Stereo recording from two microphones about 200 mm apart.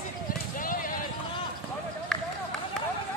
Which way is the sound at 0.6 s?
45° left (ahead or behind).